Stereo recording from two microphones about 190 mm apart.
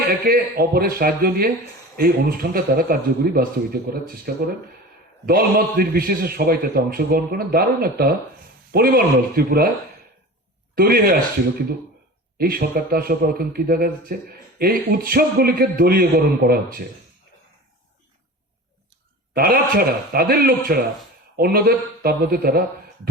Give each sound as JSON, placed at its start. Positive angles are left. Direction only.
{"t": 0.3, "sound": "a man's voice", "side_deg": -50}
{"t": 5.2, "sound": "a man's voice", "side_deg": -50}
{"t": 10.8, "sound": "a man's voice", "side_deg": -50}
{"t": 12.4, "sound": "a man's voice", "side_deg": -50}
{"t": 19.4, "sound": "a man's voice", "side_deg": -50}